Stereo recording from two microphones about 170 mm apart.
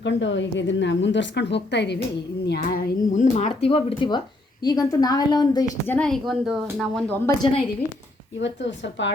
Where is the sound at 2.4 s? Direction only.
70° left (ahead or behind).